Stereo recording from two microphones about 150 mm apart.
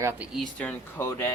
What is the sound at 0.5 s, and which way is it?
Speech, 15° left (ahead or behind).